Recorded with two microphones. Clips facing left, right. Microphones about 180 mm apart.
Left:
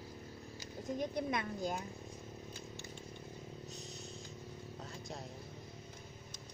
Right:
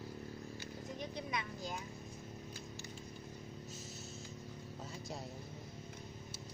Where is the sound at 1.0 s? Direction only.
50° left (ahead or behind).